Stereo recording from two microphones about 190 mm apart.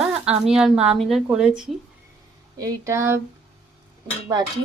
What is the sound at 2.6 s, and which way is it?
Speech, 20° right (ahead or behind).